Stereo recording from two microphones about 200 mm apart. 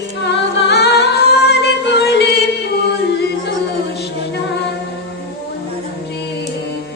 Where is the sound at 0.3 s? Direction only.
55° left (ahead or behind).